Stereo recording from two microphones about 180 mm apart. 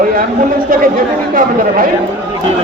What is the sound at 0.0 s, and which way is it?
Chatter, 55° right (ahead or behind).